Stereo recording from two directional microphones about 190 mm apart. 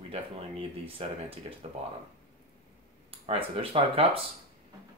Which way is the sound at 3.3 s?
30° right (ahead or behind).